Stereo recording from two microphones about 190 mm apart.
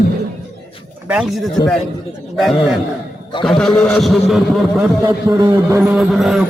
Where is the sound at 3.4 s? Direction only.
Centre (ahead or behind).